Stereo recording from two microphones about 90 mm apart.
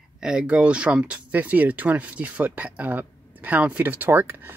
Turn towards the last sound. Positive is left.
turn(degrees=-25)  # may be behind; listen again after turning